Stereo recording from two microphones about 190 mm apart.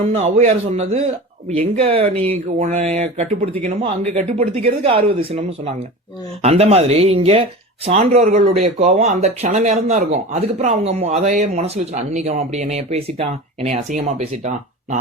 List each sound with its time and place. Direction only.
0.1 s a man's voice: 35° right (ahead or behind)